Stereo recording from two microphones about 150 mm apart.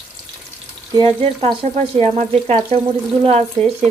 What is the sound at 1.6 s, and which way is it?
Frying, 50° right (ahead or behind).